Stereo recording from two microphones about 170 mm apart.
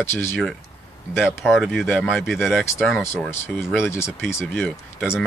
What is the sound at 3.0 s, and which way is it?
Speech, 15° left (ahead or behind).